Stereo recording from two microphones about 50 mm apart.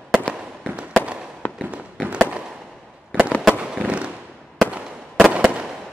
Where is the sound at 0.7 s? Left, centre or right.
Right.